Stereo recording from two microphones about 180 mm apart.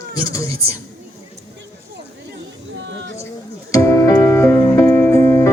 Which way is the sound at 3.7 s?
15° left (ahead or behind).